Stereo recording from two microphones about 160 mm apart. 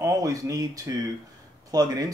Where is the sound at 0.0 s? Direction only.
20° right (ahead or behind).